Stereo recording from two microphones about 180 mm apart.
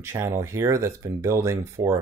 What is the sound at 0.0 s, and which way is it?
Speech, 15° right (ahead or behind).